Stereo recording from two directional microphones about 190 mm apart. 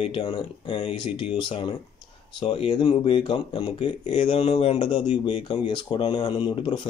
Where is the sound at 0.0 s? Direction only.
25° left (ahead or behind).